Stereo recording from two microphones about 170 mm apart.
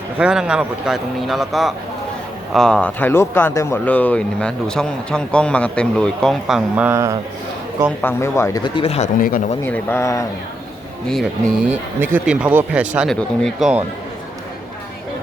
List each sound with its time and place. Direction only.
0.2 s speech: 5° right (ahead or behind)
6.7 s speech: 15° right (ahead or behind)
8.0 s speech: 15° left (ahead or behind); by 9.0 s 35° left (ahead or behind)
9.1 s speech: 55° left (ahead or behind)
9.6 s speech: 10° left (ahead or behind)
11.1 s speech: 5° right (ahead or behind)